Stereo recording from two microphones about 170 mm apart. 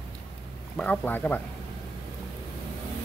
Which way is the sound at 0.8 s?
10° left (ahead or behind).